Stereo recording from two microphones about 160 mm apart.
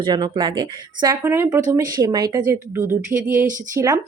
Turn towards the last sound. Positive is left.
turn(degrees=-20)  # may be behind; listen again after turning